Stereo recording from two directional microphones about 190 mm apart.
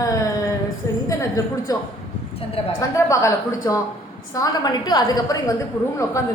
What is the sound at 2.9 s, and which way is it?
A woman's voice, 15° left (ahead or behind).